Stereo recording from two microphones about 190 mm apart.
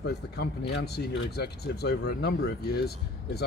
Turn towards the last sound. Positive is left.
turn(degrees=55)  # may be behind; listen again after turning